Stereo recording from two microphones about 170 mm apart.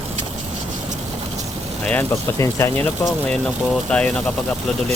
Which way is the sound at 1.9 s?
15° left (ahead or behind).